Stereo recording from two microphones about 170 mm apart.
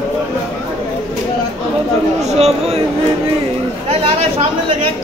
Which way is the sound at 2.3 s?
40° right (ahead or behind).